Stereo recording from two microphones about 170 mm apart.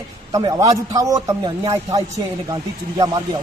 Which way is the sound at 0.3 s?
20° right (ahead or behind).